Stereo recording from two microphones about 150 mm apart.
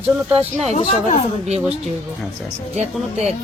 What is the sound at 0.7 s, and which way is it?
Speech, 50° left (ahead or behind).